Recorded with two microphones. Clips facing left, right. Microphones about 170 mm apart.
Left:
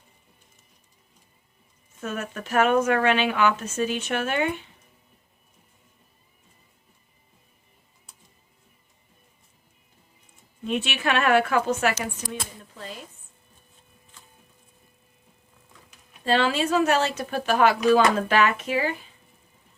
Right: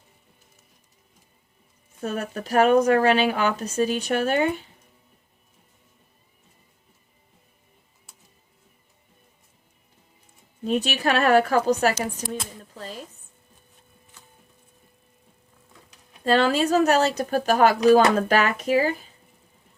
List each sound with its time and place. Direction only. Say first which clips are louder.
2.0 s speech: right 3 dB; 35° right (ahead or behind)
10.6 s speech: right 3 dB; 40° right (ahead or behind)
12.3 s a sound: right 3 dB; 40° right (ahead or behind)
16.2 s speech: right 3 dB; 45° right (ahead or behind)